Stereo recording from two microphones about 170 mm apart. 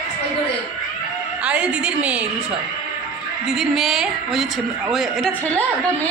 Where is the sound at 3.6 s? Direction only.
Centre (ahead or behind).